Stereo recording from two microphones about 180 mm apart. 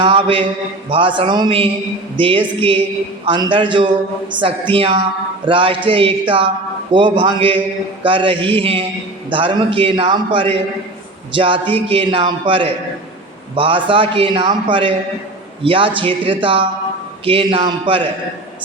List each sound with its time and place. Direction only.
0.0 s a man's voice: 30° right (ahead or behind)